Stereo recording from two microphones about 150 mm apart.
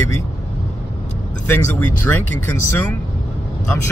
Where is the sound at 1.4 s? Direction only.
15° left (ahead or behind).